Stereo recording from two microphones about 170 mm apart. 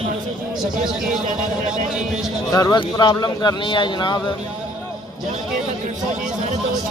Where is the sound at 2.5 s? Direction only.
25° left (ahead or behind).